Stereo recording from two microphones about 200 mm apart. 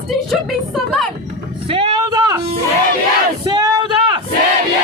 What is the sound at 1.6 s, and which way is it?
Music, 25° right (ahead or behind).